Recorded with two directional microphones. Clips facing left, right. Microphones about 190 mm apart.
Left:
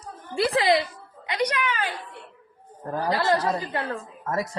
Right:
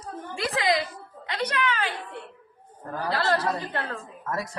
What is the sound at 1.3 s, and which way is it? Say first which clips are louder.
Speech: left 2 dB; 10° left (ahead or behind).